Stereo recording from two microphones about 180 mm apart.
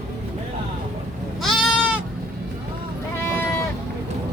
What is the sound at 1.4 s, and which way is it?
Goat, centre (ahead or behind).